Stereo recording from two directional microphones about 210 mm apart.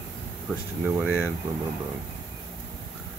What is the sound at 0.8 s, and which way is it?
Speech, 5° right (ahead or behind).